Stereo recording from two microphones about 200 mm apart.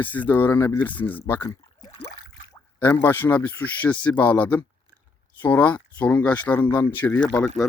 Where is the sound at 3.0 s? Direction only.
10° left (ahead or behind).